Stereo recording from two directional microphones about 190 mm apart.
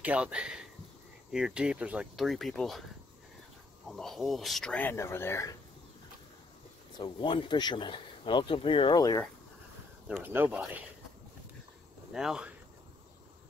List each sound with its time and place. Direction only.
0.0 s speech: 5° right (ahead or behind)
3.9 s speech: centre (ahead or behind)
7.0 s speech: 25° left (ahead or behind)
10.0 s speech: 10° right (ahead or behind)
12.1 s speech: 5° right (ahead or behind)